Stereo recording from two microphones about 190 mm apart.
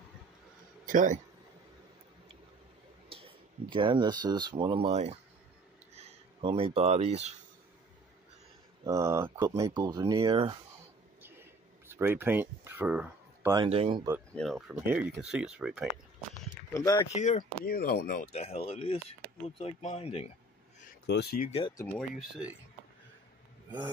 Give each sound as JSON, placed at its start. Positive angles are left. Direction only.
{"t": 0.8, "sound": "speech", "side_deg": -45}
{"t": 3.1, "sound": "speech", "side_deg": -30}
{"t": 8.8, "sound": "speech", "side_deg": -15}
{"t": 11.9, "sound": "speech", "side_deg": -10}
{"t": 13.7, "sound": "speech", "side_deg": -30}
{"t": 14.3, "sound": "speech", "side_deg": 0}
{"t": 16.7, "sound": "speech", "side_deg": 20}
{"t": 17.1, "sound": "speech", "side_deg": 40}
{"t": 21.1, "sound": "speech", "side_deg": 60}
{"t": 21.5, "sound": "speech", "side_deg": 30}
{"t": 21.7, "sound": "speech", "side_deg": 10}